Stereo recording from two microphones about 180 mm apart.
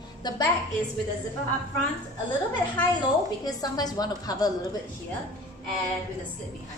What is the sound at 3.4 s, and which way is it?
A woman's voice, 20° left (ahead or behind).